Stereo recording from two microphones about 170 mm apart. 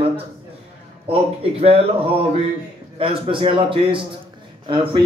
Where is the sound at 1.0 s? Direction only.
35° right (ahead or behind).